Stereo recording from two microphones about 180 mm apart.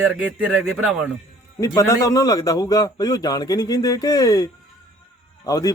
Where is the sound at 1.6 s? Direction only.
20° left (ahead or behind).